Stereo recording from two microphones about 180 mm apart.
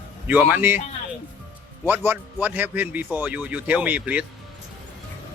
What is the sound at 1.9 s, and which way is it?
A man's voice, 10° right (ahead or behind).